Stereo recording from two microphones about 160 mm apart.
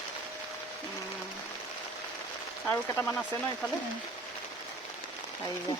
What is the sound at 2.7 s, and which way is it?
Stir, 15° left (ahead or behind).